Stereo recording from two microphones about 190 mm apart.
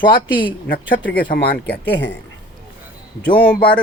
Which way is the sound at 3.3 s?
55° left (ahead or behind).